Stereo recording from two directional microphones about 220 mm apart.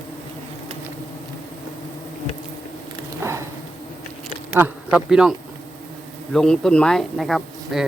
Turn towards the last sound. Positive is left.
turn(degrees=0)  # may be behind; listen again after turning